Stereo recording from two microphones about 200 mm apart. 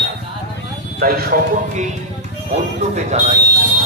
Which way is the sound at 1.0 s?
50° right (ahead or behind).